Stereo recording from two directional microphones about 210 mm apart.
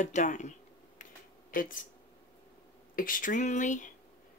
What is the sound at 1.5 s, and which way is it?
Speech, 40° left (ahead or behind).